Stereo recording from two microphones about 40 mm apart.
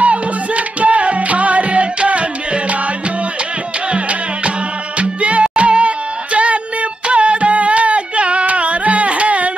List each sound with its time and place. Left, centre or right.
0.0 s music: right
4.9 s music: right